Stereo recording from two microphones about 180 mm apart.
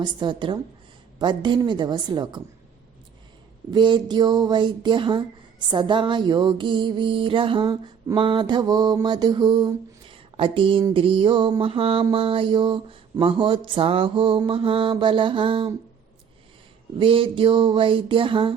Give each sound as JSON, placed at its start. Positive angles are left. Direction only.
{"t": 0.0, "sound": "speech", "side_deg": -25}
{"t": 3.7, "sound": "speech", "side_deg": -25}
{"t": 17.0, "sound": "speech", "side_deg": -30}